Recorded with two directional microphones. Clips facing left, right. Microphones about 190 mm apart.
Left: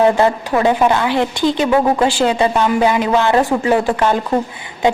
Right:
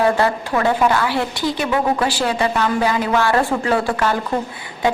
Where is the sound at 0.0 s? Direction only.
20° left (ahead or behind).